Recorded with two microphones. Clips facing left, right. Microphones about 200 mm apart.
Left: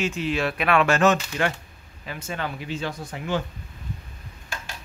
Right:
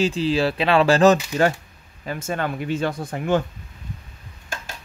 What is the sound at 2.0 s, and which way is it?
Speech, 45° right (ahead or behind).